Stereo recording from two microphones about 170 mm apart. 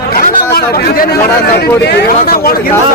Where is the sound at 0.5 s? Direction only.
65° left (ahead or behind).